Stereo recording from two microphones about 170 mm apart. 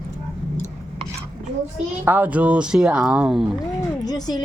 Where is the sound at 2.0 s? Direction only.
10° right (ahead or behind).